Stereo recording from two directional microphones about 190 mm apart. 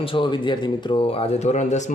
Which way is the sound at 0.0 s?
25° left (ahead or behind).